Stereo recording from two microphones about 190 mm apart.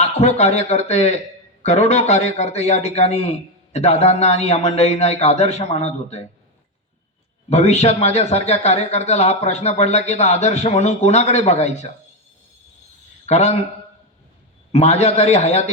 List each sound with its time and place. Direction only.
0.0 s a man's voice: 35° left (ahead or behind)
7.5 s a man's voice: 35° left (ahead or behind)
13.2 s a man's voice: 35° left (ahead or behind)
14.7 s a man's voice: 35° left (ahead or behind)